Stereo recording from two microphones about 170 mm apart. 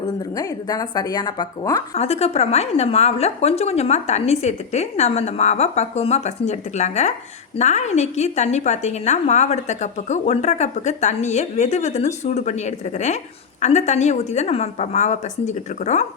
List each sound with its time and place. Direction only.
0.2 s speech: 20° left (ahead or behind)
2.0 s a woman's voice: 40° left (ahead or behind)